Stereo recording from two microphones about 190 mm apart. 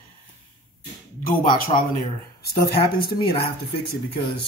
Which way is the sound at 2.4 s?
55° left (ahead or behind).